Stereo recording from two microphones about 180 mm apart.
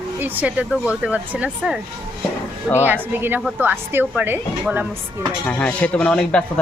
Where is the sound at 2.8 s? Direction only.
10° right (ahead or behind).